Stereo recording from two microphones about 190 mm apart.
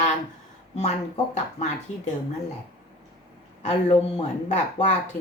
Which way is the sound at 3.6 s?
35° left (ahead or behind).